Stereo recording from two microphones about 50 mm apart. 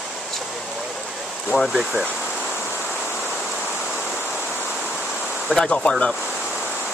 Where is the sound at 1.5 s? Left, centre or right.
Centre.